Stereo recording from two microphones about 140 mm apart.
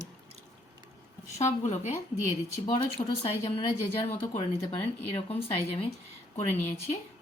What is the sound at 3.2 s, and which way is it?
A woman's voice, 45° left (ahead or behind).